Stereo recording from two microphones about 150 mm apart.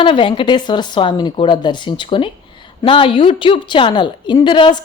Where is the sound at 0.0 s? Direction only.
35° left (ahead or behind).